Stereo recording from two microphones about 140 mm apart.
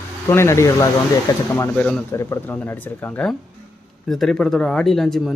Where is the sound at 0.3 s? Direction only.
20° left (ahead or behind).